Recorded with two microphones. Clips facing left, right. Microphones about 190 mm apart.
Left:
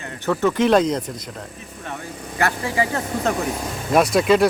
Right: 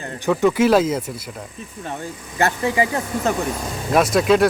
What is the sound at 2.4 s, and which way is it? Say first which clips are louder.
Speech: right 3 dB; 20° right (ahead or behind).